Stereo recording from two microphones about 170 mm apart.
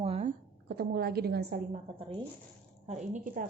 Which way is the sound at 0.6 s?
70° right (ahead or behind).